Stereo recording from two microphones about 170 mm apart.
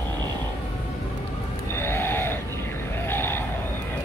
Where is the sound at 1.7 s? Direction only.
15° left (ahead or behind).